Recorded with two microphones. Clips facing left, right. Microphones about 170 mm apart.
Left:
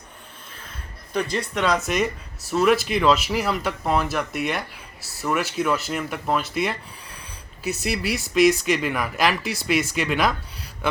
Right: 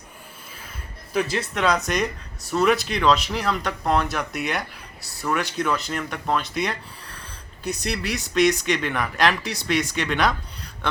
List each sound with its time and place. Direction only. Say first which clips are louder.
1.1 s speech: even; centre (ahead or behind)